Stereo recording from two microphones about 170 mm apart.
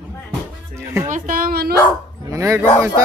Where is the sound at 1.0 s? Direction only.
50° right (ahead or behind).